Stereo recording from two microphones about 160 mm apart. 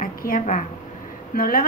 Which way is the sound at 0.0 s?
60° left (ahead or behind).